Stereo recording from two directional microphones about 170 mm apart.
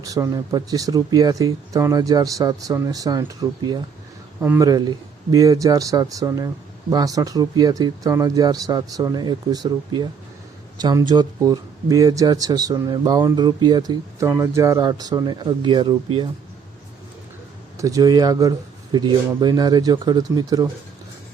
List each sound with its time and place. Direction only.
0.0 s speech: 20° right (ahead or behind)
4.4 s speech: 10° right (ahead or behind)
17.7 s speech: 20° right (ahead or behind)